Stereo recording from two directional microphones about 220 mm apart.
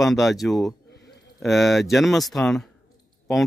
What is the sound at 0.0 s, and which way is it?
Speech, centre (ahead or behind).